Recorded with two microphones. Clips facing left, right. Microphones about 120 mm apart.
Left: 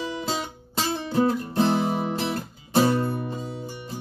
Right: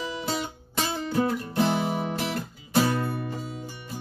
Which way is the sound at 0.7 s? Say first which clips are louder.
Left 2 dB; 30° left (ahead or behind).